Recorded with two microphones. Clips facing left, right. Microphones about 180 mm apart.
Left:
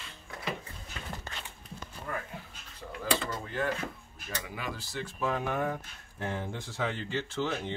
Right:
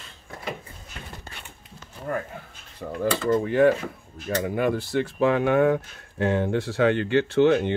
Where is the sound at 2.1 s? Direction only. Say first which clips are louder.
Right 9 dB; 45° right (ahead or behind).